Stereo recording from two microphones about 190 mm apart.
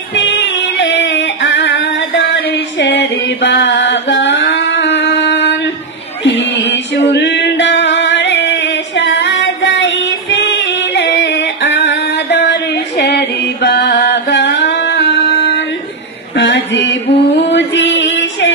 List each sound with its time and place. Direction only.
0.1 s music: 65° left (ahead or behind)